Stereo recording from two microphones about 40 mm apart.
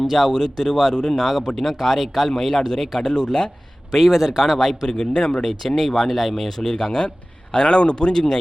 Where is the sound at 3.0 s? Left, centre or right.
Centre.